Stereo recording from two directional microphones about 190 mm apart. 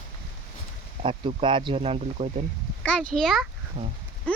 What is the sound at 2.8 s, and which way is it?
Speech, 5° left (ahead or behind).